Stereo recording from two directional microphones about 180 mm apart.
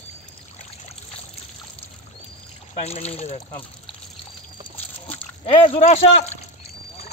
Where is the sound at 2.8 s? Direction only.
35° left (ahead or behind).